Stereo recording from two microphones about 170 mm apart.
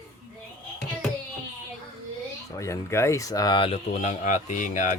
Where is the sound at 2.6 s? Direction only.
15° left (ahead or behind).